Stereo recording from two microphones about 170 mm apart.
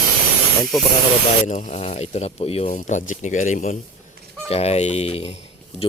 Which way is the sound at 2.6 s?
45° left (ahead or behind).